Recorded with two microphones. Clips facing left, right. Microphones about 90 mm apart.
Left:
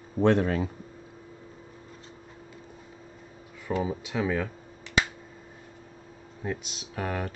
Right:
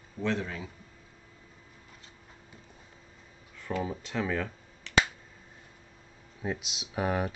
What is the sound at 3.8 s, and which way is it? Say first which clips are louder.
Speech: left 3 dB; 5° left (ahead or behind).